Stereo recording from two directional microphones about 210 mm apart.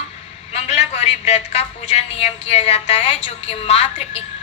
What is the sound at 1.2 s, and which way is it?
A woman's voice, 30° left (ahead or behind).